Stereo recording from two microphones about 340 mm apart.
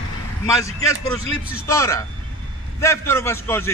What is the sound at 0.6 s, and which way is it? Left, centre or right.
Speech, centre.